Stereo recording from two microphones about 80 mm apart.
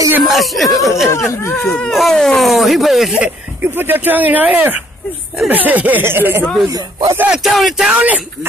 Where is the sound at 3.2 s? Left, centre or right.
Right.